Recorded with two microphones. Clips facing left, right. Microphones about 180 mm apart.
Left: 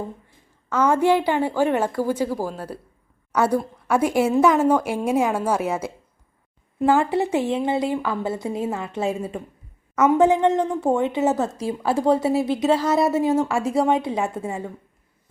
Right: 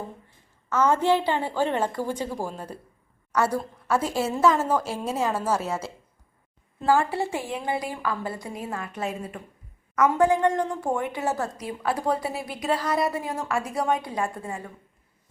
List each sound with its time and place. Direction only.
0.7 s a woman's voice: 10° left (ahead or behind)
3.3 s a woman's voice: 20° left (ahead or behind)